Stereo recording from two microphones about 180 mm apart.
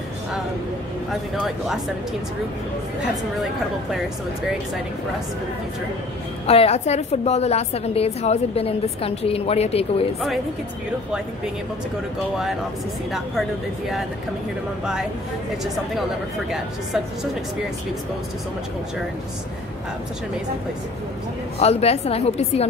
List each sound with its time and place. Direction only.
1.3 s speech: centre (ahead or behind)
6.4 s a woman's voice: 35° left (ahead or behind)
13.1 s speech: centre (ahead or behind)
16.4 s speech: 5° right (ahead or behind)
21.5 s a woman's voice: 35° left (ahead or behind)